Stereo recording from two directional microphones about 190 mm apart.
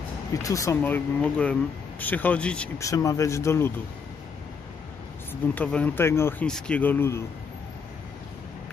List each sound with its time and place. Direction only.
0.3 s speech: 15° left (ahead or behind)
2.8 s speech: 15° left (ahead or behind)
5.3 s speech: 10° left (ahead or behind)